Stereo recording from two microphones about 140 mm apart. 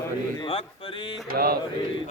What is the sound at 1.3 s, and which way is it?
Mantra, 90° right.